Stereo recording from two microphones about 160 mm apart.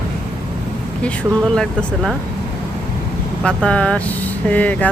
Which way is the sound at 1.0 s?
5° left (ahead or behind).